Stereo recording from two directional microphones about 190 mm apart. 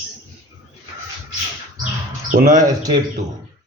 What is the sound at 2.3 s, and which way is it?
Speech, 45° right (ahead or behind).